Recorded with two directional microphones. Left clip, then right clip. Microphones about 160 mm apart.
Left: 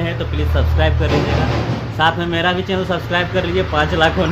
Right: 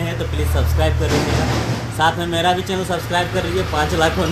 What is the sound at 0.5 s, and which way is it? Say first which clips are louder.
Speech: left 2 dB; 10° right (ahead or behind).